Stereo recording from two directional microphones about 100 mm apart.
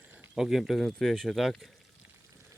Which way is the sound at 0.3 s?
5° right (ahead or behind).